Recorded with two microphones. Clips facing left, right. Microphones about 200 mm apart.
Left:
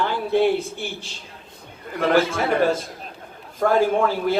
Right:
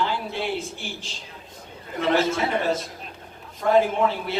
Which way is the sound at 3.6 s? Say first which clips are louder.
Left 1 dB; 50° left (ahead or behind).